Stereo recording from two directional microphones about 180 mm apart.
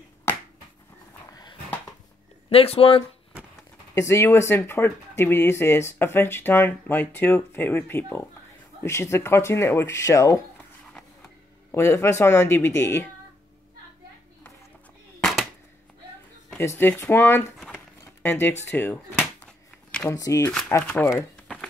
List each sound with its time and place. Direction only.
2.5 s speech: 30° left (ahead or behind)
3.9 s speech: 15° left (ahead or behind)
11.7 s speech: 15° left (ahead or behind)
15.1 s a sound: 5° left (ahead or behind)
16.5 s speech: 15° left (ahead or behind)
17.7 s a sound: 10° left (ahead or behind)
18.7 s speech: 10° left (ahead or behind)
21.1 s crumpling: centre (ahead or behind)